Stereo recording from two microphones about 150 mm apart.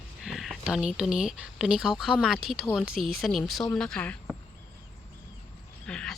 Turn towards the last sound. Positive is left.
turn(degrees=5)  # may be behind; listen again after turning